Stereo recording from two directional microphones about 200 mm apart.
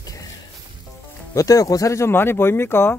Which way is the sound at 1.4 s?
15° left (ahead or behind).